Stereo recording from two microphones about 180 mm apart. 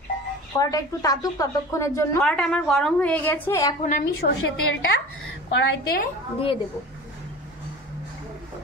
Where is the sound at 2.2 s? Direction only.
5° left (ahead or behind).